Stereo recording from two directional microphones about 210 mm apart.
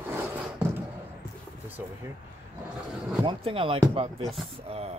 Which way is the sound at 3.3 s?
25° right (ahead or behind).